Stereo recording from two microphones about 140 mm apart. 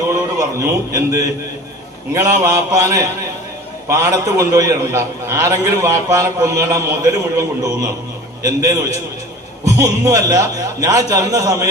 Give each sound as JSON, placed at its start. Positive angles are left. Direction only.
{"t": 0.1, "sound": "a man's voice", "side_deg": -25}